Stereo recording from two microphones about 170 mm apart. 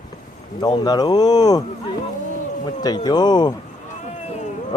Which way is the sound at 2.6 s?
25° left (ahead or behind).